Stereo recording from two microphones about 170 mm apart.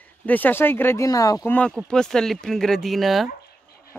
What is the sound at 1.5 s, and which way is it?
Speech, 5° left (ahead or behind).